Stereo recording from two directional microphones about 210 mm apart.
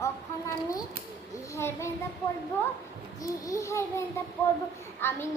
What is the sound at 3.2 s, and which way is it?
A child's voice, 15° left (ahead or behind).